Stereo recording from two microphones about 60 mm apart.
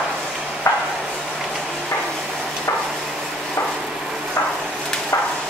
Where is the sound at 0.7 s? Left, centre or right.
Left.